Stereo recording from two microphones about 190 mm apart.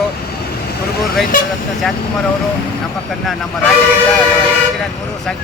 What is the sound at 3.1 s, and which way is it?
Speech, centre (ahead or behind).